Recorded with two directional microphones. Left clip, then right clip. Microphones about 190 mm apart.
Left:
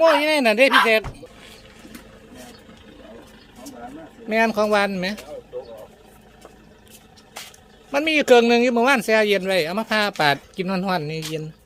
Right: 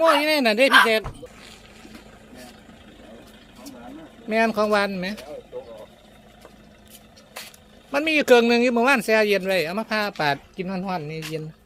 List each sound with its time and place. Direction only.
0.0 s a man's voice: 5° right (ahead or behind)
4.3 s a man's voice: centre (ahead or behind)
7.4 s vehicle: 25° right (ahead or behind)
7.9 s a man's voice: 5° right (ahead or behind); by 11.2 s 25° left (ahead or behind)